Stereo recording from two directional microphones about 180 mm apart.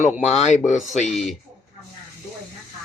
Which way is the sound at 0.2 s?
40° left (ahead or behind).